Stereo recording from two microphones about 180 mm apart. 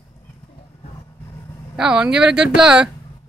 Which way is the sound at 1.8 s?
5° right (ahead or behind).